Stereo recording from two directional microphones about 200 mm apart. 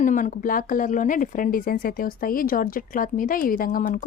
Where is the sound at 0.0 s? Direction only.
40° left (ahead or behind).